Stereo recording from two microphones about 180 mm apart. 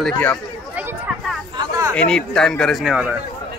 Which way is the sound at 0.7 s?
10° right (ahead or behind).